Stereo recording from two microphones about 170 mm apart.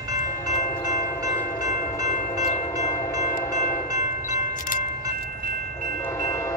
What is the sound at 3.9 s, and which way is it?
Train, 20° right (ahead or behind).